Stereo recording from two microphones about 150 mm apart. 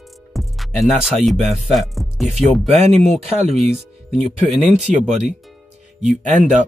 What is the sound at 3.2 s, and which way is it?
Speech, 45° right (ahead or behind).